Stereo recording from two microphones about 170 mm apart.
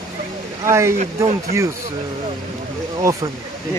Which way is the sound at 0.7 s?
15° right (ahead or behind).